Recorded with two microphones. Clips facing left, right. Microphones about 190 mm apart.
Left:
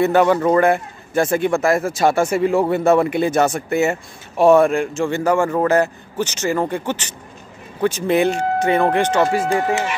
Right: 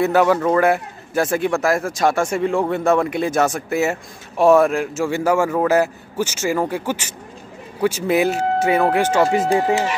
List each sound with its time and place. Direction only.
0.0 s a man's voice: centre (ahead or behind)
9.5 s speech: 30° right (ahead or behind)